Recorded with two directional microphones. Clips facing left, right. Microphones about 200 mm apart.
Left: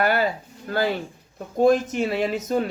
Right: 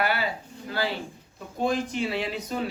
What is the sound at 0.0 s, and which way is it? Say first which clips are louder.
Speech: left 6 dB; 45° left (ahead or behind).